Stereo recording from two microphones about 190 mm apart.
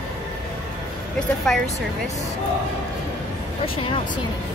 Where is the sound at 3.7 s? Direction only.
30° left (ahead or behind).